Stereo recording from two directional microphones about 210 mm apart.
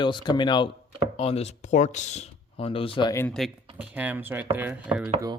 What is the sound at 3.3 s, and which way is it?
Speech, 5° right (ahead or behind).